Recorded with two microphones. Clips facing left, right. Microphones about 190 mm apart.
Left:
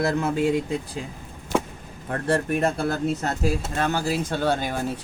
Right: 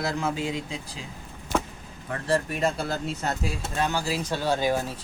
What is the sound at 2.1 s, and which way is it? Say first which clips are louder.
Speech: left 3 dB; 55° left (ahead or behind).